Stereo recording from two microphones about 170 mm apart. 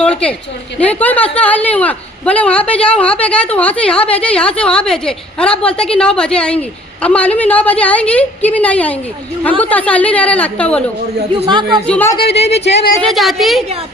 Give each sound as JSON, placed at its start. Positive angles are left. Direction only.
{"t": 0.0, "sound": "a woman's voice", "side_deg": 5}
{"t": 11.3, "sound": "a woman's voice", "side_deg": -30}
{"t": 11.9, "sound": "speech", "side_deg": 10}
{"t": 12.3, "sound": "speech", "side_deg": 40}
{"t": 13.0, "sound": "a woman's voice", "side_deg": 0}